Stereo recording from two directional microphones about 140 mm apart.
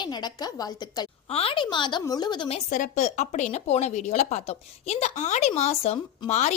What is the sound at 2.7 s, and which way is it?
A woman's voice, 65° left (ahead or behind).